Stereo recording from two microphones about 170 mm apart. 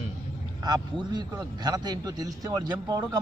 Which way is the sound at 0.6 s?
25° right (ahead or behind).